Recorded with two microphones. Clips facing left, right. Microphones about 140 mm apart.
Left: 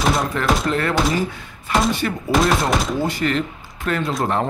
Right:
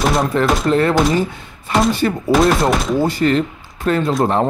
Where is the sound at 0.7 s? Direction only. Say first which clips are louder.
Right 6 dB; 25° right (ahead or behind).